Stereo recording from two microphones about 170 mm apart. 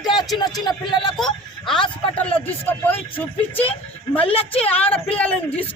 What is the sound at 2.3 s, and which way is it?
Speech, 10° left (ahead or behind).